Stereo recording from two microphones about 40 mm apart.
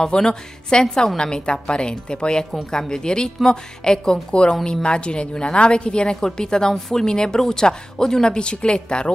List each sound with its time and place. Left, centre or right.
0.0 s a woman's voice: centre